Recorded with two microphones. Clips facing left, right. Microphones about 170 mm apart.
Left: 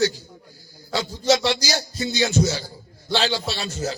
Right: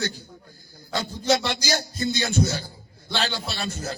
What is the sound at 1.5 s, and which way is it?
A man's voice, 50° right (ahead or behind).